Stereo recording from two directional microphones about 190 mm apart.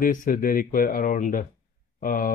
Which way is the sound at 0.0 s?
45° left (ahead or behind).